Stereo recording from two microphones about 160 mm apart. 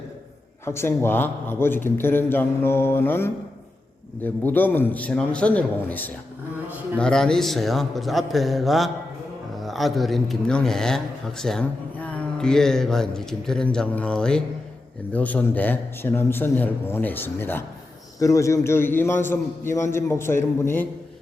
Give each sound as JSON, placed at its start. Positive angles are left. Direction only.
{"t": 0.6, "sound": "a man's voice", "side_deg": 15}